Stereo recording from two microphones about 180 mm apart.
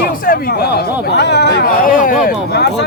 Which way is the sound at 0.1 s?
50° left (ahead or behind).